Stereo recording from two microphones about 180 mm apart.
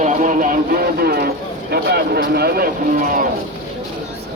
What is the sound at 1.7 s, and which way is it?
Speech, 60° right (ahead or behind).